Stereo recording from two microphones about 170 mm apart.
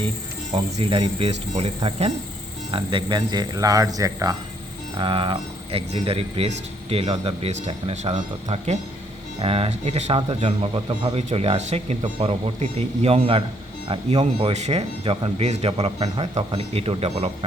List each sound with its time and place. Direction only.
0.5 s a man's voice: 35° right (ahead or behind)